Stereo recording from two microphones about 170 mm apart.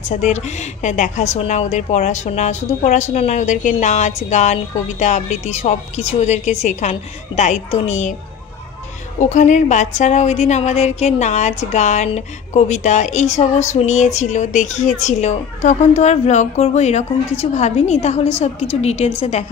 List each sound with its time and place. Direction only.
0.1 s a woman's voice: 45° left (ahead or behind)
9.2 s a woman's voice: 45° left (ahead or behind)